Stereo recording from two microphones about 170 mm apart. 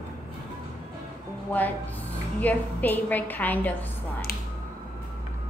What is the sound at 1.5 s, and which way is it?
A woman's voice, 10° left (ahead or behind).